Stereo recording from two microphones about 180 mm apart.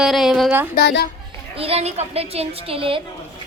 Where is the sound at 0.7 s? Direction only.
65° left (ahead or behind).